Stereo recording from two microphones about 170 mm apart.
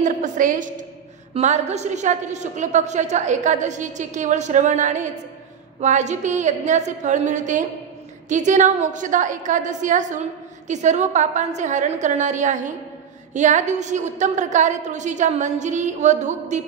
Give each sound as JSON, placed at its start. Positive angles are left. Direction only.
{"t": 0.0, "sound": "a woman's voice", "side_deg": -50}